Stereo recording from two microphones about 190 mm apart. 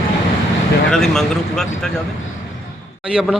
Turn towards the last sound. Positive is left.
turn(degrees=-5)  # may be behind; listen again after turning